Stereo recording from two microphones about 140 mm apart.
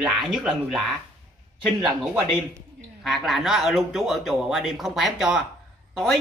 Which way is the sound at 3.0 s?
Centre (ahead or behind).